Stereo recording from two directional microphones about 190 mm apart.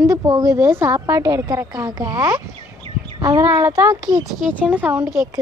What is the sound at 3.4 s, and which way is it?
Speech, 10° right (ahead or behind).